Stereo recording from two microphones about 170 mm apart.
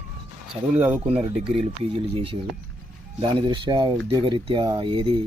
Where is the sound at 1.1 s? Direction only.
35° right (ahead or behind).